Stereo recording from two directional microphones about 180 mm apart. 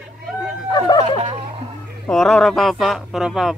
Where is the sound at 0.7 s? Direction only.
25° left (ahead or behind).